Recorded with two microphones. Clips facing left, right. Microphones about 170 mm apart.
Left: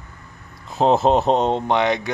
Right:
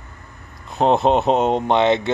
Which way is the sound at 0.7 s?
Centre (ahead or behind).